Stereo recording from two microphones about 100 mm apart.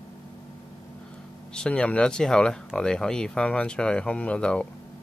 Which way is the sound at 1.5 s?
10° left (ahead or behind).